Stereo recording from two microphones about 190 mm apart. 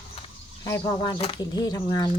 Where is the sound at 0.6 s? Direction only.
20° left (ahead or behind).